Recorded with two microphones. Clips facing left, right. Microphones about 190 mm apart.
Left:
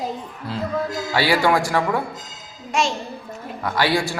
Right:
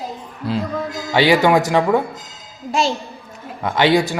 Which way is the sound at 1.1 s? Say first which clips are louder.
Right 5 dB; 20° right (ahead or behind).